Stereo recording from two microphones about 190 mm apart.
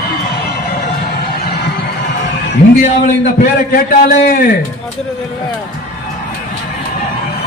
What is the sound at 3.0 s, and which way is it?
A man's voice, 50° left (ahead or behind).